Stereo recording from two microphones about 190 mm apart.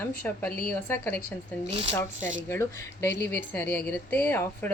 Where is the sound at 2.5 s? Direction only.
10° left (ahead or behind).